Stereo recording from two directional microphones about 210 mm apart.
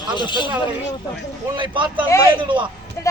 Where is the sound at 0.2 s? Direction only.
20° left (ahead or behind).